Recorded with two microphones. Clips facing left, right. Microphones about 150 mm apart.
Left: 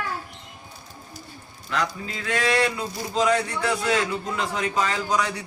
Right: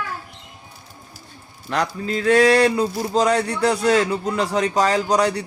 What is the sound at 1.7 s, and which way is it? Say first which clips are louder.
Speech: right 5 dB; 40° right (ahead or behind).